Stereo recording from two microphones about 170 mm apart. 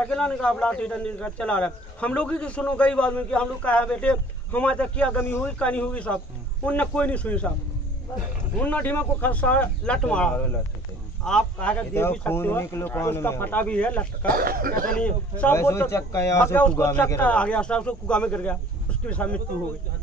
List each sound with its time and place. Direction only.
0.0 s a man's voice: 5° left (ahead or behind)
8.5 s a man's voice: 10° left (ahead or behind)
14.2 s speech: 60° right (ahead or behind)
15.0 s a man's voice: 5° left (ahead or behind)